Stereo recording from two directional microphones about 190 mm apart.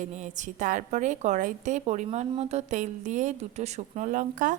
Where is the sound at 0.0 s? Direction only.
40° right (ahead or behind).